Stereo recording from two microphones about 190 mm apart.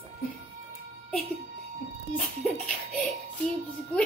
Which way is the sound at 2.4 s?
Centre (ahead or behind).